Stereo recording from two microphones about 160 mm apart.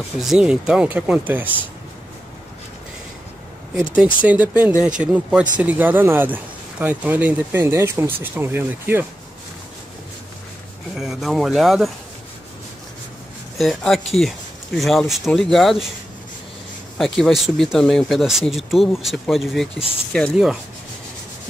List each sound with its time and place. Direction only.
0.2 s speech: 5° right (ahead or behind)
3.9 s speech: 10° right (ahead or behind)
11.0 s speech: centre (ahead or behind)
13.6 s speech: centre (ahead or behind)
17.0 s speech: centre (ahead or behind)